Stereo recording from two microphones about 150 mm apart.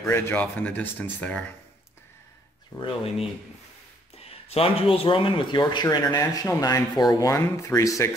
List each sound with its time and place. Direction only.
0.0 s speech: 10° left (ahead or behind)
2.7 s speech: 25° left (ahead or behind)
4.2 s speech: 40° left (ahead or behind); by 8.1 s 20° left (ahead or behind)